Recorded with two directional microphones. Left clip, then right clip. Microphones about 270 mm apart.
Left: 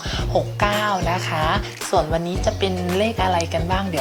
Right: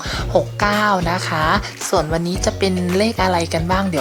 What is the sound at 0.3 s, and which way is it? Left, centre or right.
Speech, right.